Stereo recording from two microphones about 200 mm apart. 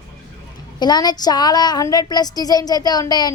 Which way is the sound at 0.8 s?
20° left (ahead or behind).